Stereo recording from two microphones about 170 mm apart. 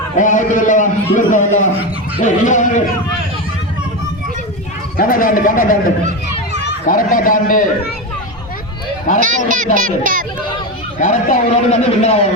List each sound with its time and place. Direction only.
0.2 s a man's voice: 50° left (ahead or behind)
4.9 s speech: 55° left (ahead or behind)
6.8 s a man's voice: 55° left (ahead or behind)
9.1 s a man's voice: 50° left (ahead or behind)
9.7 s a child's voice: 50° right (ahead or behind)
11.0 s a man's voice: 45° left (ahead or behind)